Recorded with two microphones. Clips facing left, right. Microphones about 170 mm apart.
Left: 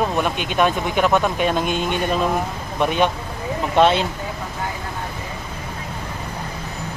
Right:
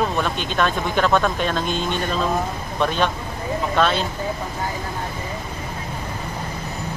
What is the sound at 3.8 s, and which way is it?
Speech, 25° left (ahead or behind).